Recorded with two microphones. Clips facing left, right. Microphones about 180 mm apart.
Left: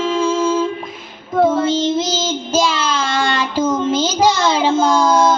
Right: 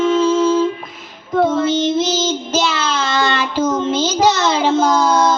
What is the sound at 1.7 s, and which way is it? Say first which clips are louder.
Child singing: right 1 dB; 10° left (ahead or behind).